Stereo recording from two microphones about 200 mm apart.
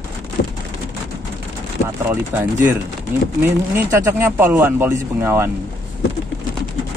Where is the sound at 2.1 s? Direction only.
10° right (ahead or behind).